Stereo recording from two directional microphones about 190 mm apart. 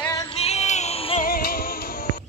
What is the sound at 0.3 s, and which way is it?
Music, 35° left (ahead or behind).